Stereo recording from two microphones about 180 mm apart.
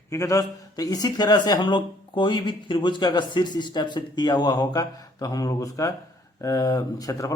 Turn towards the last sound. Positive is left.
turn(degrees=20)  # may be behind; listen again after turning